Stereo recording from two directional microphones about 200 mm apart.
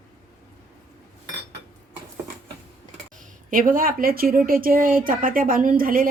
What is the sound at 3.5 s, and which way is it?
A woman's voice, 45° right (ahead or behind).